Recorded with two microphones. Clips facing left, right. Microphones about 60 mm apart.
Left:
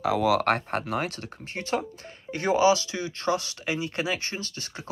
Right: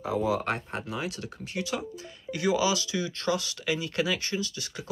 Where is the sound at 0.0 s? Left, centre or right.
Left.